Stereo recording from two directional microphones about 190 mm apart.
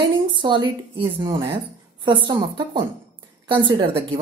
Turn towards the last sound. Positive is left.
turn(degrees=-25)  # may be behind; listen again after turning